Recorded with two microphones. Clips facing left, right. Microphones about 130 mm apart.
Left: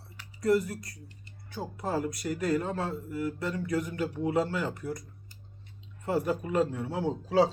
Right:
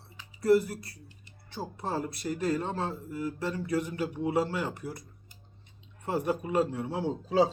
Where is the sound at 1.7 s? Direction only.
30° right (ahead or behind).